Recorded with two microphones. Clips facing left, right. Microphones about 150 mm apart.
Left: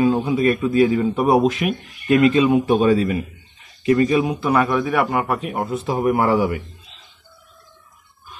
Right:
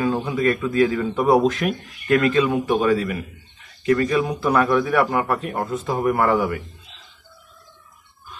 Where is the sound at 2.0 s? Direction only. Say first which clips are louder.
Left 3 dB; 20° left (ahead or behind).